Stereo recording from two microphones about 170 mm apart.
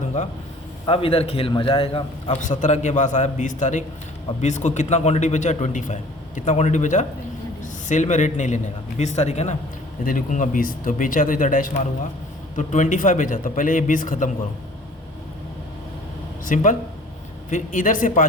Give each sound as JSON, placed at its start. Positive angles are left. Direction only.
{"t": 0.9, "sound": "a man's voice", "side_deg": 30}
{"t": 2.4, "sound": "a man's voice", "side_deg": 45}
{"t": 10.0, "sound": "a man's voice", "side_deg": 55}
{"t": 16.5, "sound": "a man's voice", "side_deg": 50}